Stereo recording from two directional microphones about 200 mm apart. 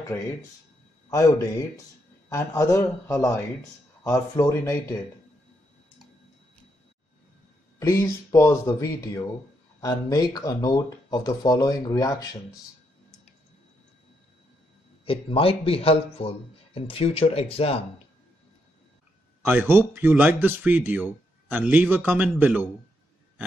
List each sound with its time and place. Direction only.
1.1 s speech: 15° left (ahead or behind)
7.8 s speech: 15° left (ahead or behind)
15.0 s speech: 30° left (ahead or behind)
19.4 s a man's voice: 10° right (ahead or behind)